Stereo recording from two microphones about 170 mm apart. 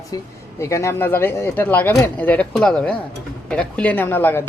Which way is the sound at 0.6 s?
15° left (ahead or behind).